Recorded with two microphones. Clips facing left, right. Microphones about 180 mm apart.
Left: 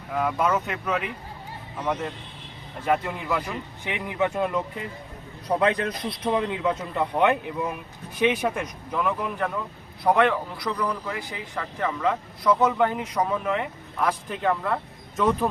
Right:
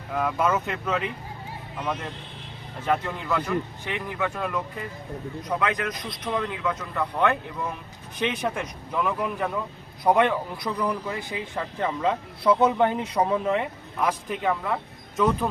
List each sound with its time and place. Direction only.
0.1 s speech: centre (ahead or behind)
2.8 s a man's voice: 10° left (ahead or behind)
8.2 s speech: 5° left (ahead or behind)
10.0 s a man's voice: 15° right (ahead or behind)
14.0 s a man's voice: 15° right (ahead or behind)
14.5 s speech: centre (ahead or behind)